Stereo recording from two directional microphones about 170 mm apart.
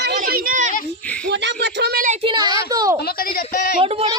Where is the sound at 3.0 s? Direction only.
60° left (ahead or behind).